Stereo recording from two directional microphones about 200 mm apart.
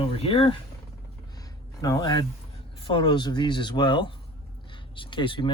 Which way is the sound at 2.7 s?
25° left (ahead or behind).